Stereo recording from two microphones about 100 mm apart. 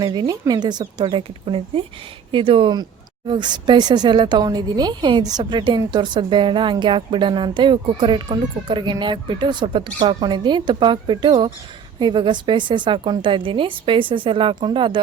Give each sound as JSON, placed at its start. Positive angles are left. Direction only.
{"t": 0.0, "sound": "speech", "side_deg": -40}
{"t": 1.1, "sound": "speech", "side_deg": -60}